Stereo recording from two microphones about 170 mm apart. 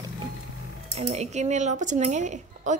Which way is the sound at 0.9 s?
40° right (ahead or behind).